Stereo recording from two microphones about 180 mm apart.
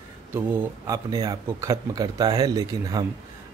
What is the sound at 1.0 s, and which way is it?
A man's voice, 20° right (ahead or behind).